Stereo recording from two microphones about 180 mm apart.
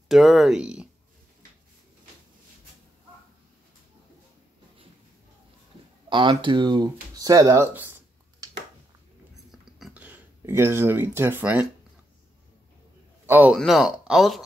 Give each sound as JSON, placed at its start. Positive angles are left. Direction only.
{"t": 0.1, "sound": "speech", "side_deg": 0}
{"t": 6.0, "sound": "speech", "side_deg": -25}
{"t": 9.5, "sound": "a sound", "side_deg": 0}
{"t": 13.3, "sound": "a man's voice", "side_deg": -10}